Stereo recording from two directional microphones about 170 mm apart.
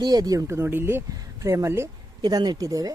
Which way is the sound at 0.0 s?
25° right (ahead or behind).